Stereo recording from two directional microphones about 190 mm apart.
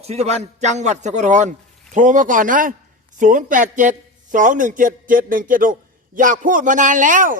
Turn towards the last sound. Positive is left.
turn(degrees=-45)  # may be behind; listen again after turning